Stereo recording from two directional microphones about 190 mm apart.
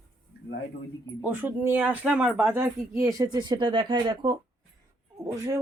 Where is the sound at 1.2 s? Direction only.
10° right (ahead or behind).